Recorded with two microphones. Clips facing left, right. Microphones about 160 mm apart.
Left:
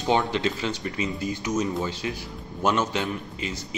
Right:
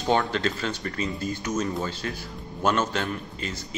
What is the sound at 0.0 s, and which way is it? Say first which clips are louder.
Speech: left 1 dB; 15° left (ahead or behind).